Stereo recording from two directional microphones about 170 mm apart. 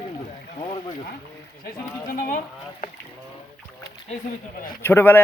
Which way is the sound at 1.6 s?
60° left (ahead or behind).